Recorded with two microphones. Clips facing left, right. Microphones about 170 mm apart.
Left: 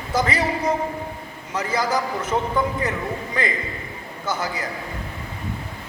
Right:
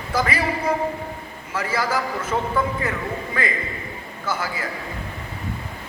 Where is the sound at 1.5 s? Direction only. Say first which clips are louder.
Left 1 dB; 20° left (ahead or behind).